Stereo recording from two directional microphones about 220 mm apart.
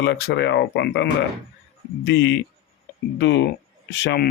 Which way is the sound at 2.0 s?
55° left (ahead or behind).